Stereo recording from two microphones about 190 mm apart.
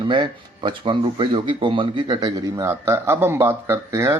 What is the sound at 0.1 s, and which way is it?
Speech, 25° right (ahead or behind).